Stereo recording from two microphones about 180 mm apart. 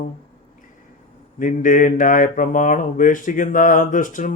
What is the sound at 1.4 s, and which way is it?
Mantra, 45° left (ahead or behind).